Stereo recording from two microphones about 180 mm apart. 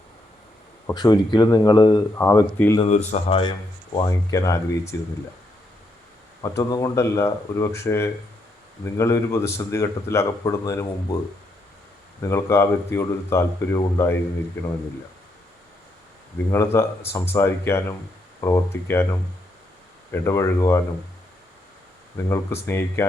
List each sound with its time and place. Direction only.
0.9 s speech: 25° left (ahead or behind)
2.8 s speech: 40° left (ahead or behind)
3.9 s speech: 20° left (ahead or behind)
6.4 s speech: 15° left (ahead or behind)
12.3 s speech: 15° left (ahead or behind)
16.5 s speech: 15° left (ahead or behind)
22.3 s speech: 15° left (ahead or behind)